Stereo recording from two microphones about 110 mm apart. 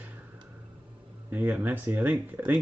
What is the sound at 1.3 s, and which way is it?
Speech, 15° right (ahead or behind).